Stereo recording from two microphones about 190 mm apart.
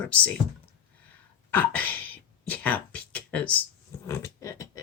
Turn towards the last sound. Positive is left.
turn(degrees=15)  # may be behind; listen again after turning